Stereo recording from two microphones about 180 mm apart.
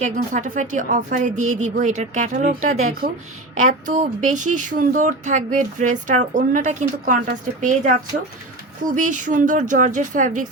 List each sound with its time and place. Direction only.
0.0 s speech: 45° right (ahead or behind)
9.0 s speech: 45° right (ahead or behind)